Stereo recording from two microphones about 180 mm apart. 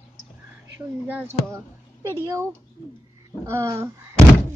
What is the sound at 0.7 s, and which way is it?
Speech, 10° right (ahead or behind).